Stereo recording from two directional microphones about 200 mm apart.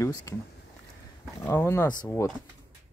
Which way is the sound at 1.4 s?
15° left (ahead or behind).